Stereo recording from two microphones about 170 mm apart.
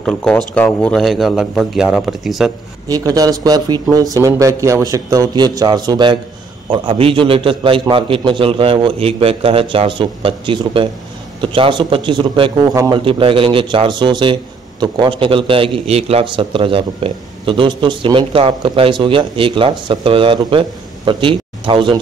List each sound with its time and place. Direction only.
0.0 s speech: 5° left (ahead or behind)
2.9 s a man's voice: 20° right (ahead or behind)